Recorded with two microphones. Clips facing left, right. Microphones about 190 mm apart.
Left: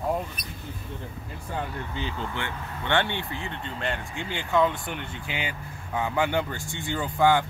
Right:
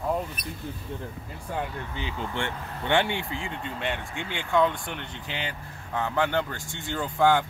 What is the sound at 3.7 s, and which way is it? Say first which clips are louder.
Speech: left 1 dB; centre (ahead or behind).